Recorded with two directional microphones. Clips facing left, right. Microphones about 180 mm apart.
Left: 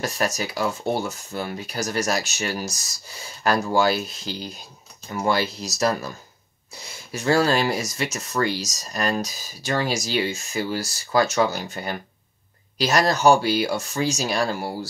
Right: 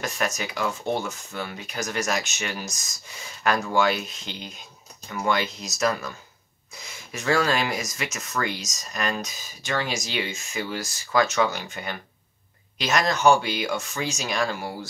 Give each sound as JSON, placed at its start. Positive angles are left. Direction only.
{"t": 0.0, "sound": "speech", "side_deg": 35}